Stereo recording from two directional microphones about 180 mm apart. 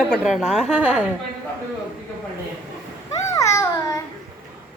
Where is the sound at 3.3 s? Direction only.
15° left (ahead or behind).